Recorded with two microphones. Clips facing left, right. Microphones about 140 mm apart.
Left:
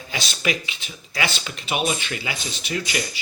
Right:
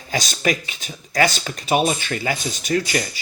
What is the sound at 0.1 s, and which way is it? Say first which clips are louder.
Speech: right 4 dB; 40° right (ahead or behind).